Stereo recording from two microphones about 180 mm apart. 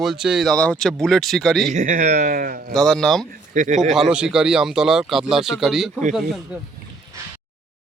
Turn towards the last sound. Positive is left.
turn(degrees=0)  # may be behind; listen again after turning